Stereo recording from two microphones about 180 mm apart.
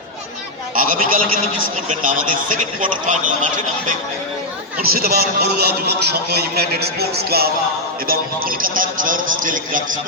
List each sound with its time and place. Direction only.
0.8 s a man's voice: 50° right (ahead or behind)
4.8 s a man's voice: 55° right (ahead or behind)